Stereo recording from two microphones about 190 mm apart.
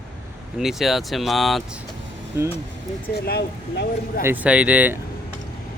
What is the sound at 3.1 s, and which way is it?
Speech, 60° left (ahead or behind).